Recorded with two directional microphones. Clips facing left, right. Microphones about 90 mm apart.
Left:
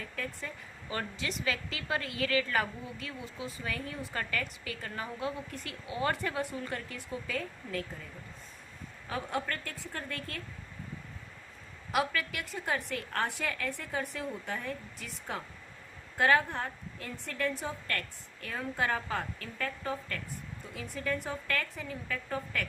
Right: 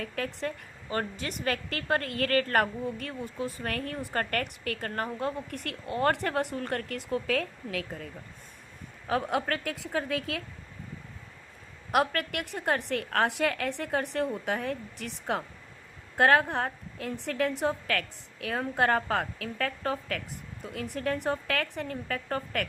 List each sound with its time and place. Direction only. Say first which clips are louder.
0.0 s a woman's voice: right 7 dB; 70° right (ahead or behind)
0.9 s a woman's voice: right 4 dB; 40° right (ahead or behind); by 10.4 s 90° right
11.9 s speech: right 4 dB; 60° right (ahead or behind)
14.4 s a woman's voice: right 6 dB; 85° right; by 22.6 s 65° right (ahead or behind)